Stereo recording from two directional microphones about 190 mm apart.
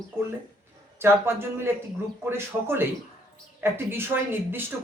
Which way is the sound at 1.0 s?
10° right (ahead or behind).